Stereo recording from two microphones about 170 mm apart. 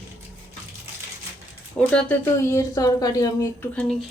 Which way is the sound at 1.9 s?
10° left (ahead or behind).